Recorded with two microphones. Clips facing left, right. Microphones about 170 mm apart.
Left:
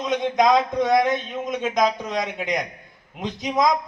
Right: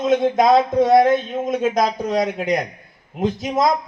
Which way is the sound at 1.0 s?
45° right (ahead or behind).